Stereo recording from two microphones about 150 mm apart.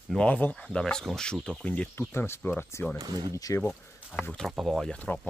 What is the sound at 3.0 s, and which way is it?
Speech, 25° right (ahead or behind).